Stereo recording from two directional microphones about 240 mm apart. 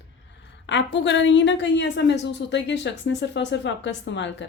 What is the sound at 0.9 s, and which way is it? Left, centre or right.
A woman's voice, left.